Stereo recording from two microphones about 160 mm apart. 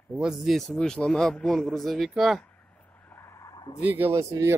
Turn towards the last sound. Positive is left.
turn(degrees=-20)  # may be behind; listen again after turning